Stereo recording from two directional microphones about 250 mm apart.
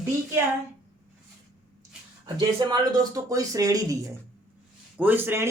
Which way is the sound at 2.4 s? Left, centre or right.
Centre.